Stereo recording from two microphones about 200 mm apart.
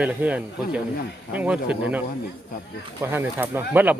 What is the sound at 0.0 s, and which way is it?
Speech, 5° right (ahead or behind).